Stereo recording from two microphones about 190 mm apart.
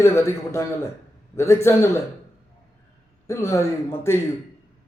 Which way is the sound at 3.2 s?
15° left (ahead or behind).